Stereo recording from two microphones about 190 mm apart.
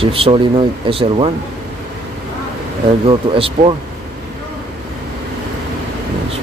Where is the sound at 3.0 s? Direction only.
30° right (ahead or behind).